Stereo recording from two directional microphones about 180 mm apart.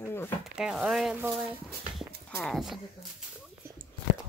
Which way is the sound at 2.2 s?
5° left (ahead or behind).